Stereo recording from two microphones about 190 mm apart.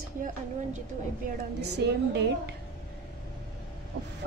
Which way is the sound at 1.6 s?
60° right (ahead or behind).